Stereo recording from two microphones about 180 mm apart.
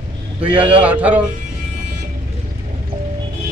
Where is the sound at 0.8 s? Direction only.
10° right (ahead or behind).